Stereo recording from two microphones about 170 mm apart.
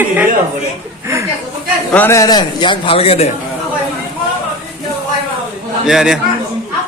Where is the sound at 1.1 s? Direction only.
15° right (ahead or behind).